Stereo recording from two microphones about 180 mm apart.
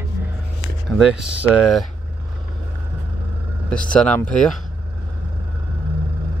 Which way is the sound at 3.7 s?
5° left (ahead or behind).